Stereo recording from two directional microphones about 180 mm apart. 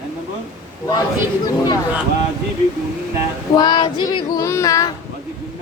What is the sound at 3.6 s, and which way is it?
Child singing, 25° left (ahead or behind).